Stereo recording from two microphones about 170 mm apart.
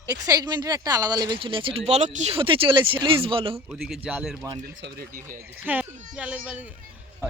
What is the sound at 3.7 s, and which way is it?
Speech, 5° right (ahead or behind).